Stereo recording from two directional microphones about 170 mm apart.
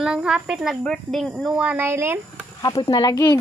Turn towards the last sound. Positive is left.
turn(degrees=20)  # may be behind; listen again after turning